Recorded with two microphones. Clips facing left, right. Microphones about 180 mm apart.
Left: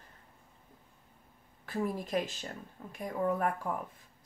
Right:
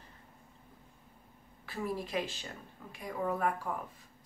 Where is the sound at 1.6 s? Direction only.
45° left (ahead or behind).